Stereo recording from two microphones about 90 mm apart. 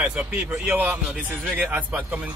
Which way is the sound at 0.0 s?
15° right (ahead or behind).